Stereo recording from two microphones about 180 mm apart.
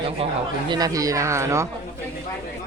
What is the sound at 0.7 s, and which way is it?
Speech, 20° right (ahead or behind).